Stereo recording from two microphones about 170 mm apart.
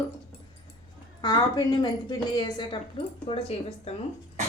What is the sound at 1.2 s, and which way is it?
A woman's voice, 25° left (ahead or behind).